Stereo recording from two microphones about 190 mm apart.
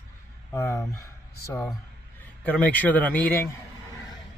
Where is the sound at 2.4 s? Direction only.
5° left (ahead or behind).